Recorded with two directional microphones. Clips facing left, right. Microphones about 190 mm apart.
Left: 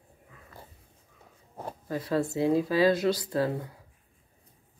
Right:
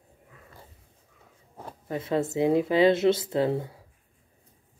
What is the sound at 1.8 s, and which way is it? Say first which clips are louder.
Speech: right 1 dB; 25° right (ahead or behind).